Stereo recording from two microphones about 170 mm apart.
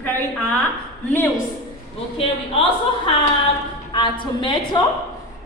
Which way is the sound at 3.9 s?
25° left (ahead or behind).